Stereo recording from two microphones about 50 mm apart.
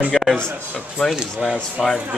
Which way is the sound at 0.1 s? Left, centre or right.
Centre.